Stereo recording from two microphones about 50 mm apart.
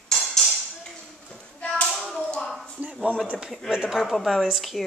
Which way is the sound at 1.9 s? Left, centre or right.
Centre.